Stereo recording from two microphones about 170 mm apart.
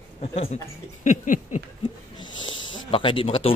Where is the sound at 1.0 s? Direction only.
45° left (ahead or behind).